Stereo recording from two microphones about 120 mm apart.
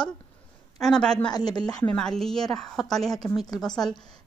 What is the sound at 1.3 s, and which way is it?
Speech, 35° left (ahead or behind).